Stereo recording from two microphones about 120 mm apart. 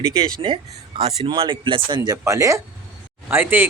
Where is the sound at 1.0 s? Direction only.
45° right (ahead or behind).